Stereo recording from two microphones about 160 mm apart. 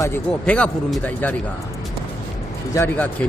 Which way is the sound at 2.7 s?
10° left (ahead or behind).